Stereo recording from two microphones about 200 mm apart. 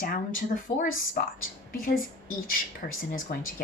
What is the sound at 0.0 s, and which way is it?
A woman's voice, 45° left (ahead or behind).